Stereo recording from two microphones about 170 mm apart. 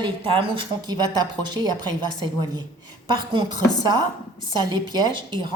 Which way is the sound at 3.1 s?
25° right (ahead or behind).